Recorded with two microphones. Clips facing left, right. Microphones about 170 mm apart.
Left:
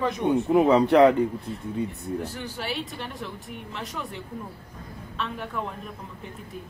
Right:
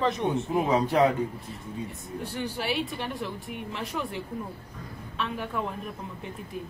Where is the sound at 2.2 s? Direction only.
Centre (ahead or behind).